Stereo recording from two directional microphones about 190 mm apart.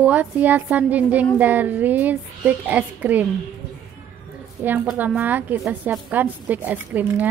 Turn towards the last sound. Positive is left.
turn(degrees=-10)  # may be behind; listen again after turning